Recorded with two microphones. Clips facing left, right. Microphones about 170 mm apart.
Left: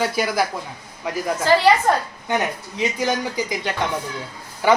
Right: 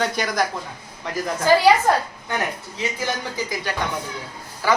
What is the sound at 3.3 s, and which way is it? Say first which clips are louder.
Speech: left 2 dB; 20° left (ahead or behind).